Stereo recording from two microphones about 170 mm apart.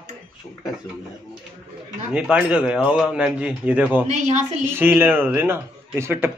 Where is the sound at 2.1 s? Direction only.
5° right (ahead or behind).